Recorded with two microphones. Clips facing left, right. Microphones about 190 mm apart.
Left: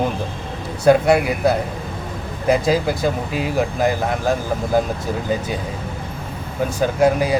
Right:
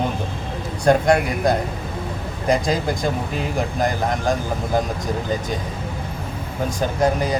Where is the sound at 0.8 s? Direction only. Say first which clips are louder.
Left 3 dB; 5° left (ahead or behind).